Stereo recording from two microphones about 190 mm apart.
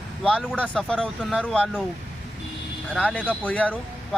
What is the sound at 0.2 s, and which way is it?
Speech, 5° right (ahead or behind).